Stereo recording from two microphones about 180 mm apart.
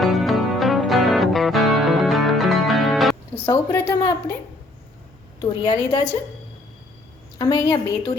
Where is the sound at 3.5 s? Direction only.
15° left (ahead or behind).